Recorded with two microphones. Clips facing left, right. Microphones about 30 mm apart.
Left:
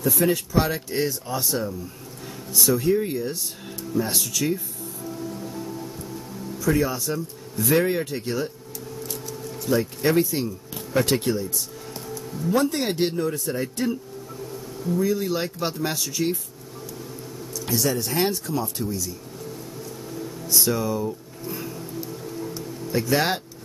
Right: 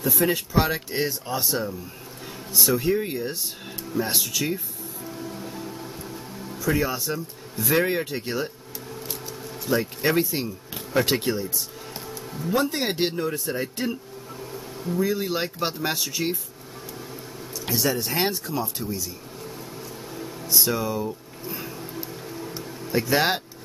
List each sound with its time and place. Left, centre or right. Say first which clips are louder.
0.0 s speech: left 1 dB; centre
5.0 s music: left 2 dB; centre
6.7 s speech: left 2 dB; centre
12.1 s music: left 3 dB; centre
12.5 s speech: left 1 dB; centre
17.6 s a sound: left 1 dB; centre
17.9 s speech: left 1 dB; centre
20.2 s a sound: even; centre
21.9 s music: left 2 dB; centre